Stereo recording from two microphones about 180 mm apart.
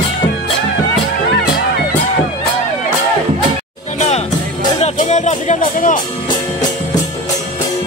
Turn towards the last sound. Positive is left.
turn(degrees=45)  # may be behind; listen again after turning